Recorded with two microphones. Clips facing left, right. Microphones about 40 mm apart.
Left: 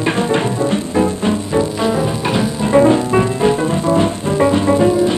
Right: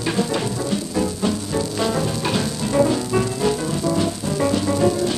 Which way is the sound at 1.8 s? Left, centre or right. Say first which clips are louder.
Left 5 dB; centre.